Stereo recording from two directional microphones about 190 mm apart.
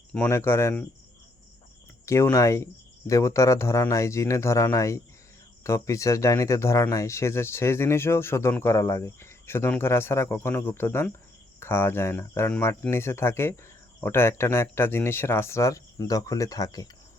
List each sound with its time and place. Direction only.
0.1 s speech: 10° left (ahead or behind)
2.0 s speech: 15° left (ahead or behind)